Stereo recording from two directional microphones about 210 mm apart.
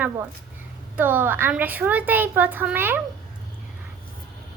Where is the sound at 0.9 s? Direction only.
10° right (ahead or behind).